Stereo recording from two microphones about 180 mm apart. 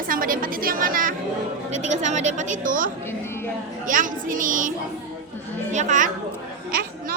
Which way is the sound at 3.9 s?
50° right (ahead or behind).